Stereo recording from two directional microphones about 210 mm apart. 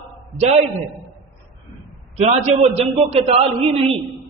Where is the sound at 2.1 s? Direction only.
30° right (ahead or behind).